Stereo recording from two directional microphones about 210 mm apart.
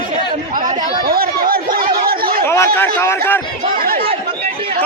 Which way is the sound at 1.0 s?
45° right (ahead or behind).